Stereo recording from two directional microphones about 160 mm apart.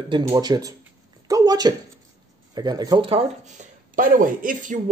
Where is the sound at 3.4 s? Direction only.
50° right (ahead or behind).